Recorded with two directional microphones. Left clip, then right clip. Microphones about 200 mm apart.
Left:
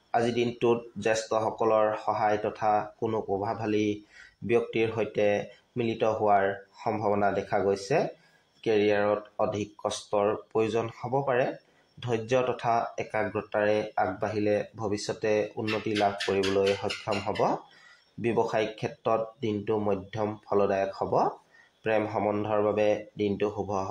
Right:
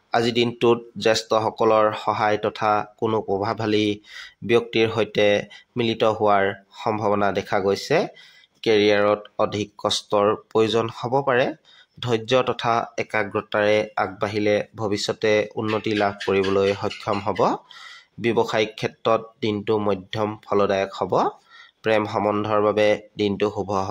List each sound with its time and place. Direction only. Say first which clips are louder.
0.1 s speech: right 6 dB; 25° right (ahead or behind)